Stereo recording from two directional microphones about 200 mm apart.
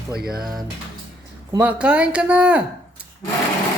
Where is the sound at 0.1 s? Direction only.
50° right (ahead or behind).